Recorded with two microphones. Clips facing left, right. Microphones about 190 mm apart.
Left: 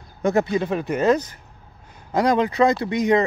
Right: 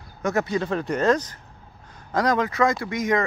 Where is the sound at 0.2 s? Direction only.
30° left (ahead or behind).